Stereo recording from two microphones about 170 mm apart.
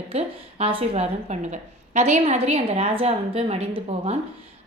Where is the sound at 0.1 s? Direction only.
35° right (ahead or behind).